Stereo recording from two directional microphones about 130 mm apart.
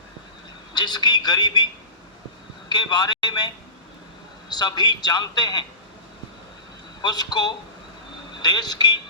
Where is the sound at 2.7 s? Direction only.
35° left (ahead or behind).